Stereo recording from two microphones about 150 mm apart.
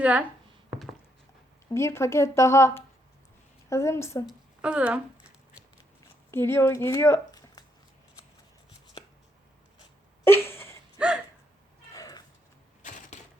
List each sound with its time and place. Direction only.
0.0 s speech: 10° right (ahead or behind)
1.7 s a woman's voice: 20° left (ahead or behind)
4.3 s speech: 5° right (ahead or behind)
6.3 s a woman's voice: 15° left (ahead or behind)
10.2 s a sound: 15° left (ahead or behind)
10.9 s gasp: 10° right (ahead or behind)
11.9 s a sound: 25° left (ahead or behind)
13.1 s typewriter: 50° left (ahead or behind)